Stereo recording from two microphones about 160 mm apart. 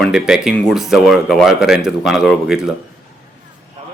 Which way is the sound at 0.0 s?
5° right (ahead or behind).